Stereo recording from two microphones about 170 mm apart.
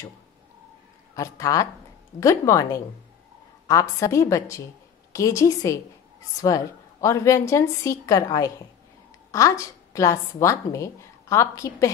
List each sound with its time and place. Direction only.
1.1 s a woman's voice: 20° left (ahead or behind)